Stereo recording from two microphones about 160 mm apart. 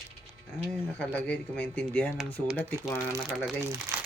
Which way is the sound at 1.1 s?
10° left (ahead or behind).